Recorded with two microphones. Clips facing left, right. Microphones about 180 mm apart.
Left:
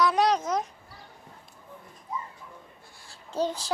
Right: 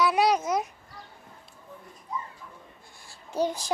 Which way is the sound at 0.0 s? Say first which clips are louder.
Even; 10° right (ahead or behind).